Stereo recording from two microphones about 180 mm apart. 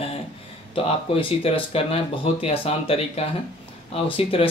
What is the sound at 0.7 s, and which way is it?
Speech, 30° left (ahead or behind).